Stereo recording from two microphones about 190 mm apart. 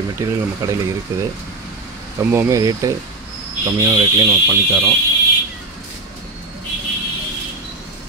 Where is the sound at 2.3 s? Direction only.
15° right (ahead or behind).